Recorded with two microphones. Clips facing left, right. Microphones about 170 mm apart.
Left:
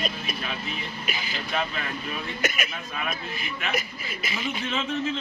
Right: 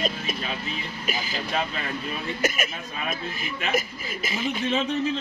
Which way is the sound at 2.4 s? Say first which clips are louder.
Right 3 dB; 45° right (ahead or behind).